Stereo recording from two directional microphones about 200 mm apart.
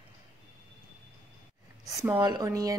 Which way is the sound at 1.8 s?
15° right (ahead or behind).